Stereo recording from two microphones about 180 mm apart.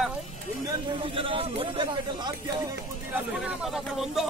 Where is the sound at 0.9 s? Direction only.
30° right (ahead or behind).